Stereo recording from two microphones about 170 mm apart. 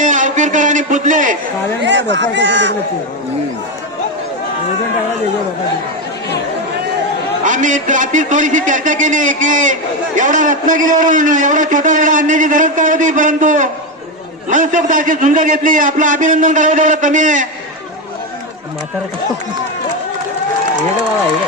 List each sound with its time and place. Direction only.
0.0 s a sound: 50° right (ahead or behind)
1.8 s speech: 90° right
7.4 s a man's voice: 45° right (ahead or behind)